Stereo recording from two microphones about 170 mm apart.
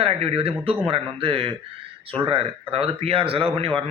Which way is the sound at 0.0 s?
35° right (ahead or behind).